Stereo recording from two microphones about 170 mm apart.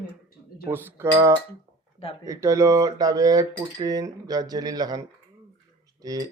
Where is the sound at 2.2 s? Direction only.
20° right (ahead or behind).